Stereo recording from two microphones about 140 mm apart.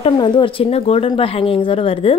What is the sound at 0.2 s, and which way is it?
Speech, 35° left (ahead or behind).